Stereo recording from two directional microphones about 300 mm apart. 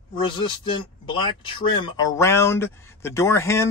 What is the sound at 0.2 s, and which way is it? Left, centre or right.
Speech, centre.